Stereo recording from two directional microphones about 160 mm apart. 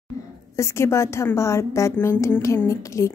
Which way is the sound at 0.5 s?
15° left (ahead or behind).